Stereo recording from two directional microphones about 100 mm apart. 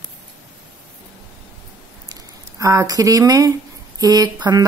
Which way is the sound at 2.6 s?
35° right (ahead or behind).